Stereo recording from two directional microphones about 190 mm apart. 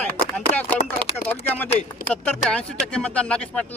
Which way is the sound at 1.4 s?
10° left (ahead or behind).